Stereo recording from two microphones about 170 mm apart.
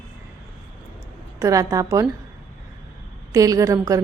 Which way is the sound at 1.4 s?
20° right (ahead or behind).